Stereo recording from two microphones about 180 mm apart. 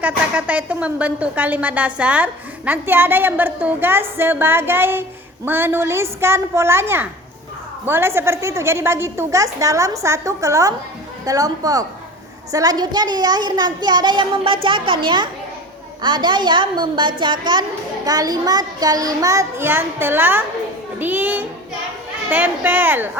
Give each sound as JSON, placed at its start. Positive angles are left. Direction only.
{"t": 0.0, "sound": "a woman's voice", "side_deg": -10}